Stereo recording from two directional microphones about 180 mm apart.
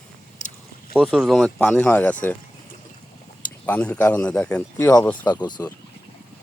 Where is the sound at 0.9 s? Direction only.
5° right (ahead or behind).